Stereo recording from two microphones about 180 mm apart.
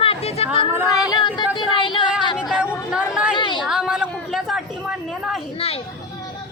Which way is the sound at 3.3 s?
25° left (ahead or behind).